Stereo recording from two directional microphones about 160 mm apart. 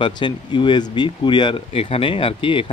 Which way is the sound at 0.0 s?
30° left (ahead or behind).